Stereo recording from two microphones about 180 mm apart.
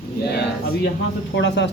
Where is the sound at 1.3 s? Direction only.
75° left (ahead or behind).